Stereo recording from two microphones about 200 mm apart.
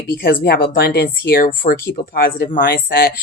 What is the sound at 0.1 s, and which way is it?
Speech, 45° left (ahead or behind).